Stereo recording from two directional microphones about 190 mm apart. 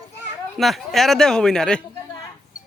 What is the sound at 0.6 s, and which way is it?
A man's voice, centre (ahead or behind).